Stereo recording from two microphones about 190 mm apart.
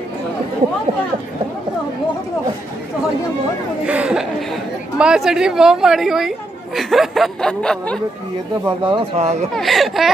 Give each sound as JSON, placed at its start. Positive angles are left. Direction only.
{"t": 3.8, "sound": "a woman's voice", "side_deg": -5}
{"t": 8.6, "sound": "speech", "side_deg": -25}
{"t": 9.5, "sound": "a woman's voice", "side_deg": 0}